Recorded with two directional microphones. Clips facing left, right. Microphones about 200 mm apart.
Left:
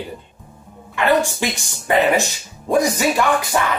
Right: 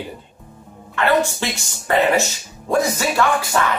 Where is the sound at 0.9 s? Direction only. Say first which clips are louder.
Left 1 dB; 15° left (ahead or behind).